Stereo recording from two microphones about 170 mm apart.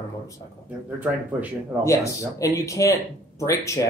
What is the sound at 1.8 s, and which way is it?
Speech, 20° left (ahead or behind).